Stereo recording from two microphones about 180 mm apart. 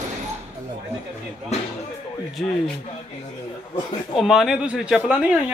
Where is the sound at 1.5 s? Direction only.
35° left (ahead or behind).